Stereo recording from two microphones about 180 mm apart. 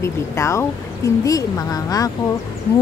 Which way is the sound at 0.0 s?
15° left (ahead or behind).